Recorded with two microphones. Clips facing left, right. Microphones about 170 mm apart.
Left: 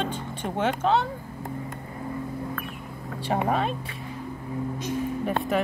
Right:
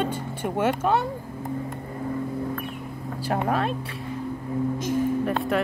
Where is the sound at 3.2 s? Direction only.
Centre (ahead or behind).